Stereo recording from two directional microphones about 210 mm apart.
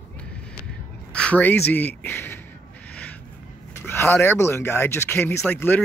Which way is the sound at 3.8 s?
10° left (ahead or behind).